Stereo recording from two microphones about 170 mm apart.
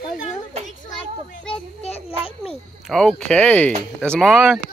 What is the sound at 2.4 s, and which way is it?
Speech, centre (ahead or behind).